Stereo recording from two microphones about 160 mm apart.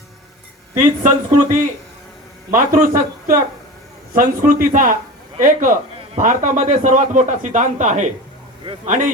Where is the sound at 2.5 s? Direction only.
60° right (ahead or behind).